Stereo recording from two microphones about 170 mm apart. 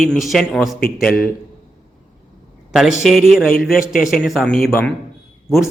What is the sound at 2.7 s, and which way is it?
A man's voice, 5° right (ahead or behind).